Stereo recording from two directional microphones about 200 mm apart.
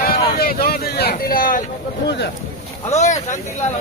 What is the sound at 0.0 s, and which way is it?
Vehicle, 50° left (ahead or behind).